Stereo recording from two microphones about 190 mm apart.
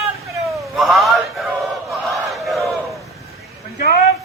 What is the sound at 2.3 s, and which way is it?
Battle cry, centre (ahead or behind).